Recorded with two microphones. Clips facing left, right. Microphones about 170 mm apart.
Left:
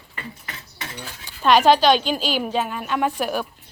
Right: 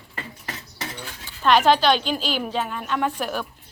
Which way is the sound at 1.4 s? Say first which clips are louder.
Left 2 dB; 15° left (ahead or behind).